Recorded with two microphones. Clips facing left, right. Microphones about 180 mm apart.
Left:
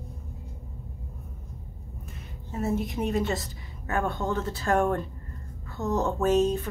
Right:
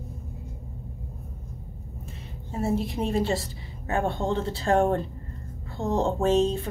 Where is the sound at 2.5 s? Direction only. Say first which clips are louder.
Right 2 dB; 30° right (ahead or behind).